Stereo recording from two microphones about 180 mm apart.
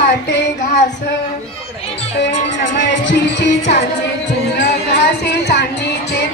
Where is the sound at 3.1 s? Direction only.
75° left (ahead or behind).